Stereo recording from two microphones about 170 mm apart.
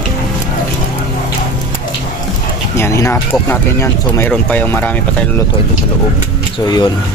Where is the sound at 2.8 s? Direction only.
15° left (ahead or behind).